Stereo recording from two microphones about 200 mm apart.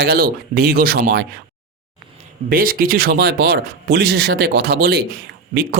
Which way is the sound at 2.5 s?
45° right (ahead or behind).